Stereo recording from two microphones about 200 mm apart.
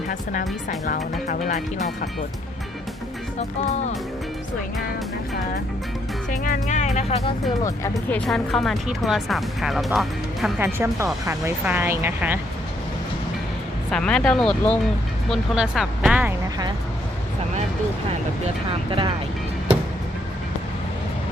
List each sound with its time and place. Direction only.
0.9 s speech: 40° left (ahead or behind)
6.4 s speech: 40° left (ahead or behind)
8.1 s speech: centre (ahead or behind)
10.6 s speech: 10° right (ahead or behind)
13.9 s speech: 5° left (ahead or behind)
18.9 s speech: 25° right (ahead or behind)